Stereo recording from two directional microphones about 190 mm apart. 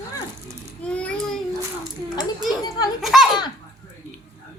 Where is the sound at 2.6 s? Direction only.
20° left (ahead or behind).